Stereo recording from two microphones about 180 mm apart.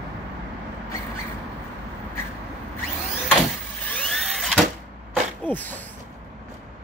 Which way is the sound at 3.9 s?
5° left (ahead or behind).